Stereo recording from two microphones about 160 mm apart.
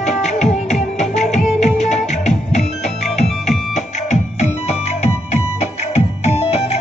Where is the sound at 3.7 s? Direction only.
45° left (ahead or behind).